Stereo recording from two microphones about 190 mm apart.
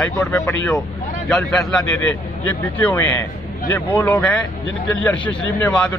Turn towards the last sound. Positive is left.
turn(degrees=5)  # may be behind; listen again after turning